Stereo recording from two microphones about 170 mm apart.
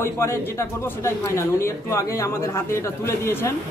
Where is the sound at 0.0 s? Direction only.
15° left (ahead or behind).